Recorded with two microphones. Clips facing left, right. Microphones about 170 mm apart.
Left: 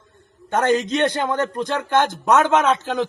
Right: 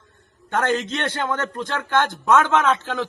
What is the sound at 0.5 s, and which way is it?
A man's voice, 20° left (ahead or behind).